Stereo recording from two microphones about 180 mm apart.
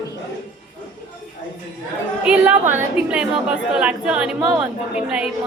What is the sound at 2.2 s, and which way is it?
A woman's voice, 10° right (ahead or behind).